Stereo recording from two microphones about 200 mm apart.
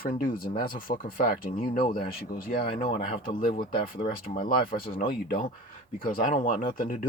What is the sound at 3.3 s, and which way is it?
Speech, 45° left (ahead or behind).